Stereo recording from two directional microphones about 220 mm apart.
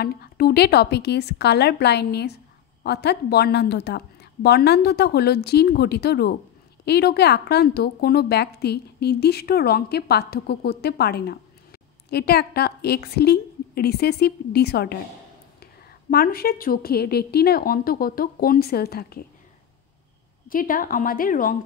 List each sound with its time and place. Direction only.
0.0 s a woman's voice: 45° left (ahead or behind)
20.4 s a woman's voice: 40° left (ahead or behind)